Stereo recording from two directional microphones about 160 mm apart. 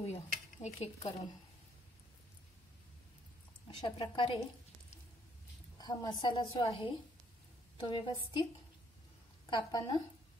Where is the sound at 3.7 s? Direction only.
30° left (ahead or behind).